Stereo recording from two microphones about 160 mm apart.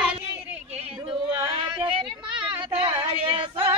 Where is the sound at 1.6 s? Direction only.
30° right (ahead or behind).